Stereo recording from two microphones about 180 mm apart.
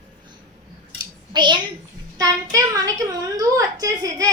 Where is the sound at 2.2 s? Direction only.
20° right (ahead or behind).